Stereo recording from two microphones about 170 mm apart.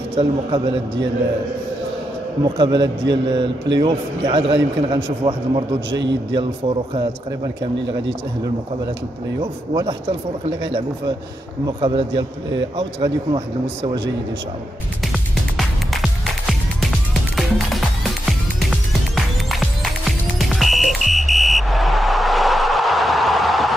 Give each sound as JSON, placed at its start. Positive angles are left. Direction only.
{"t": 0.1, "sound": "a man's voice", "side_deg": -35}
{"t": 2.4, "sound": "a man's voice", "side_deg": -30}
{"t": 5.9, "sound": "a man's voice", "side_deg": -90}
{"t": 11.6, "sound": "a man's voice", "side_deg": -30}
{"t": 15.5, "sound": "music", "side_deg": 0}